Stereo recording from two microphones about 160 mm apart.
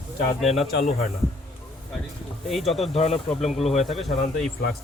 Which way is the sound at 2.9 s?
40° left (ahead or behind).